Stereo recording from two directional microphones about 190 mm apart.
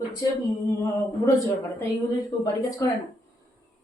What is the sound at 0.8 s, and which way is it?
Speech, 15° left (ahead or behind).